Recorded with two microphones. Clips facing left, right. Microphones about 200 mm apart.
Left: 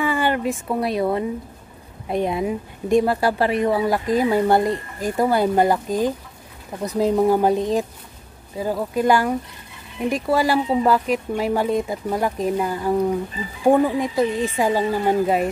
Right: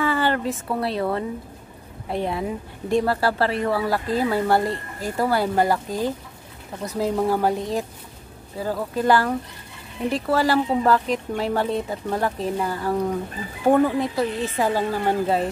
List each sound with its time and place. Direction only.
0.0 s a woman's voice: 15° left (ahead or behind)